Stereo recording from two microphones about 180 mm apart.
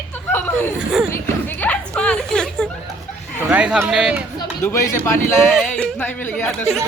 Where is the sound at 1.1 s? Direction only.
10° left (ahead or behind).